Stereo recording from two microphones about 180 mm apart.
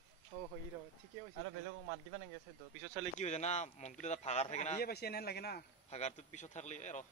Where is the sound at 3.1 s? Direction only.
40° left (ahead or behind).